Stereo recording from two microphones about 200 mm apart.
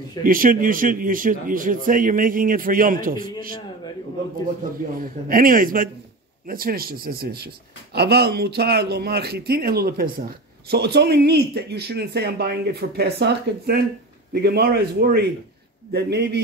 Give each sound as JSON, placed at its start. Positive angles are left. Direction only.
{"t": 0.2, "sound": "a man's voice", "side_deg": -45}
{"t": 5.0, "sound": "a man's voice", "side_deg": -45}